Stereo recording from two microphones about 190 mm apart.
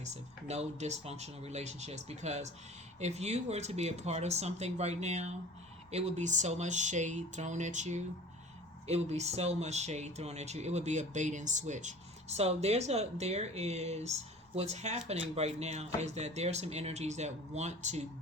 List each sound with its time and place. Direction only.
0.0 s speech: 35° right (ahead or behind)